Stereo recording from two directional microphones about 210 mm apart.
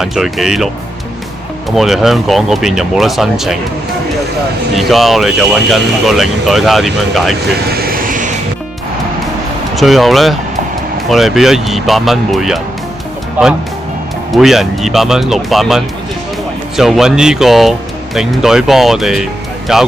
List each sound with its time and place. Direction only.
0.0 s speech: centre (ahead or behind)
1.7 s speech: centre (ahead or behind)
4.8 s speech: centre (ahead or behind)
7.7 s vehicle: 45° right (ahead or behind)
9.7 s speech: centre (ahead or behind)
14.3 s speech: centre (ahead or behind)